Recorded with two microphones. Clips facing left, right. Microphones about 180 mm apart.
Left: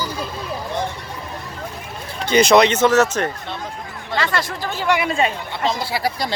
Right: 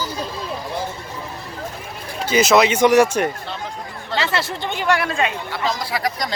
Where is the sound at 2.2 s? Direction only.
5° right (ahead or behind).